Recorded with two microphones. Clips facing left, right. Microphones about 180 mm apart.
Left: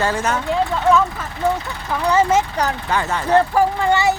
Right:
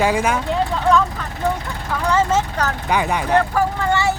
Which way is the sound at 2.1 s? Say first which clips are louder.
Left 2 dB; 10° left (ahead or behind).